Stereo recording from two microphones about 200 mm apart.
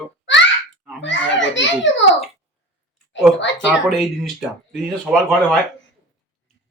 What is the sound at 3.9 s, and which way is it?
Speech, centre (ahead or behind).